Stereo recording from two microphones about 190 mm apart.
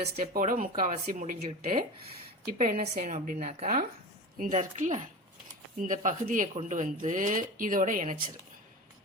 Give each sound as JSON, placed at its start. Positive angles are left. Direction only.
{"t": 0.0, "sound": "a woman's voice", "side_deg": -45}